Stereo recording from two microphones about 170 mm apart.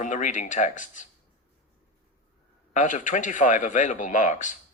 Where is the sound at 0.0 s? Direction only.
45° left (ahead or behind).